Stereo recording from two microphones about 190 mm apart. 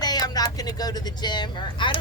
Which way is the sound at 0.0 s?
20° left (ahead or behind).